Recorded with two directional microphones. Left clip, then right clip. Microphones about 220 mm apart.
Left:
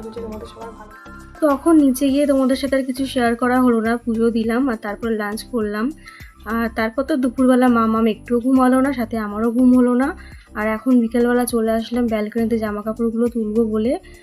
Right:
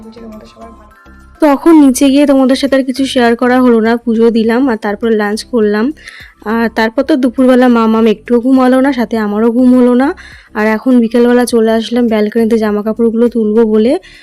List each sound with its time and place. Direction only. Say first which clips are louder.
1.4 s speech: right 8 dB; 40° right (ahead or behind)